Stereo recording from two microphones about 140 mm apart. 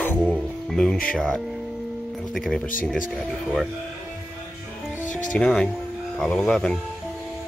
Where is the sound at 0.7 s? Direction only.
5° left (ahead or behind).